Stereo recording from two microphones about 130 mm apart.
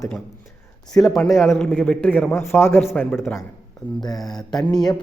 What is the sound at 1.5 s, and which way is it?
A man's voice, 10° left (ahead or behind).